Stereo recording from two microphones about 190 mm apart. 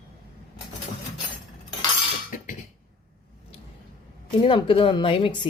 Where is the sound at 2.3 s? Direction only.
45° left (ahead or behind).